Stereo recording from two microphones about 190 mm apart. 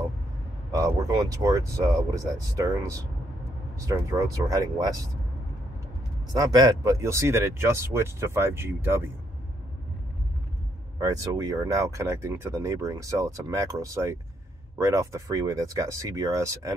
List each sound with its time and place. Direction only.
0.7 s speech: 20° right (ahead or behind)
6.3 s speech: 20° right (ahead or behind)
11.0 s speech: 20° right (ahead or behind)